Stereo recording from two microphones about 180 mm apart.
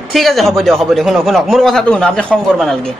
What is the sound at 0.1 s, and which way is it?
Speech, centre (ahead or behind).